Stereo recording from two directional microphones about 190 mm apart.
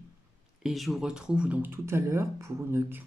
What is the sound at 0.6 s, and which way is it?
Speech, centre (ahead or behind).